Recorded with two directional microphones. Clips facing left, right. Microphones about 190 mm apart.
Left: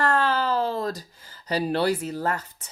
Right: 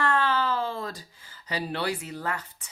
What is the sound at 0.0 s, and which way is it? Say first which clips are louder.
A woman's voice: left 2 dB; 40° left (ahead or behind).